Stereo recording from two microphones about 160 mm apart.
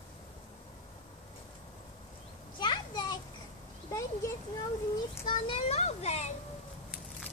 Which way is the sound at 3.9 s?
20° left (ahead or behind).